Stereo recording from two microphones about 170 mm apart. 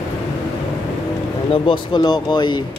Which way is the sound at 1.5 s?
30° left (ahead or behind).